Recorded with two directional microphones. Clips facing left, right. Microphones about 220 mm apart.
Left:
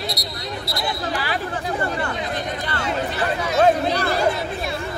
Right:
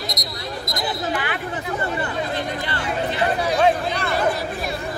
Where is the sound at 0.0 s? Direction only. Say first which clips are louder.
Left 1 dB; 30° left (ahead or behind).